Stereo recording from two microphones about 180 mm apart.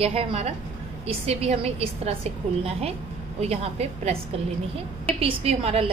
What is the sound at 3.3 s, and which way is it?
Speech, 35° right (ahead or behind).